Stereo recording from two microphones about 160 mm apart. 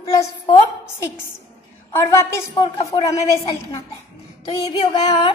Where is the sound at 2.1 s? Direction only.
15° left (ahead or behind).